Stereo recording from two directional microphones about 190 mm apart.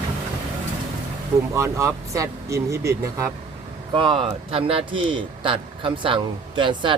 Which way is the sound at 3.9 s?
25° right (ahead or behind).